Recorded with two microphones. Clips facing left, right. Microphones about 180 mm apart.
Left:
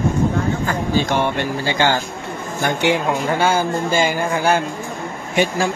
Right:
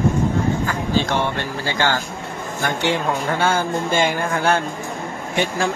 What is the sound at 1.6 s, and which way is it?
Speech, 15° left (ahead or behind).